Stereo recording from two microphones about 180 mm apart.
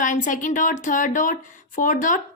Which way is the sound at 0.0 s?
45° left (ahead or behind).